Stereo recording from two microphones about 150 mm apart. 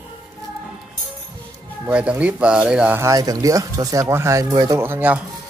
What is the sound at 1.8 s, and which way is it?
Speech, 5° right (ahead or behind).